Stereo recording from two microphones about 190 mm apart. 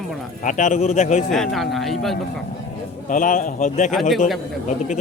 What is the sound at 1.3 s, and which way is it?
Speech, centre (ahead or behind).